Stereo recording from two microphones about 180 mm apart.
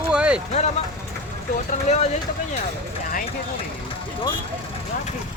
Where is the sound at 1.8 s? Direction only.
40° left (ahead or behind).